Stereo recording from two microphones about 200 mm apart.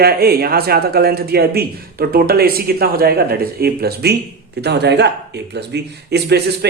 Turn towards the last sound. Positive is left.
turn(degrees=-55)  # may be behind; listen again after turning